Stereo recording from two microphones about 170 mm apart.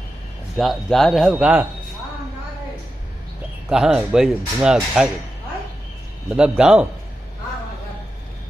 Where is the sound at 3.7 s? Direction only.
5° right (ahead or behind).